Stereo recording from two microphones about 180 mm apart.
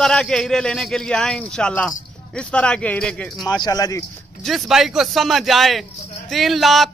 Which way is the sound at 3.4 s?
20° left (ahead or behind).